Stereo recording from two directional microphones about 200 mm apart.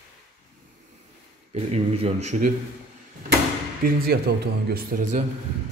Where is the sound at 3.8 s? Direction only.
50° right (ahead or behind).